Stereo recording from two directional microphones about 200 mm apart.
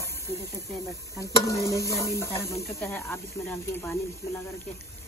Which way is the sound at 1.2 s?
15° left (ahead or behind).